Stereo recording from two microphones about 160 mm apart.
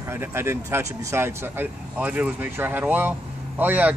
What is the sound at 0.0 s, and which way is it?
Speech, 15° right (ahead or behind).